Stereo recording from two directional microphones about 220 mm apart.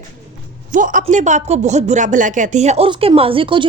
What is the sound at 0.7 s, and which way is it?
Speech, 35° right (ahead or behind).